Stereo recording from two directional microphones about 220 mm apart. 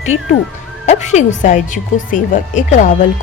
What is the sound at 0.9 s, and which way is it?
A woman's voice, 30° left (ahead or behind).